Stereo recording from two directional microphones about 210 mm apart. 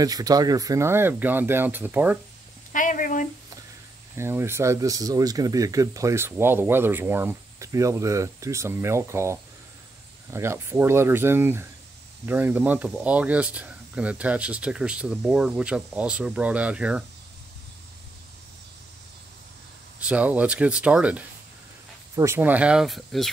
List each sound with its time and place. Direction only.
0.0 s speech: 15° right (ahead or behind)
2.7 s a sound: 40° left (ahead or behind)
4.1 s speech: 10° right (ahead or behind)
20.0 s speech: 5° right (ahead or behind)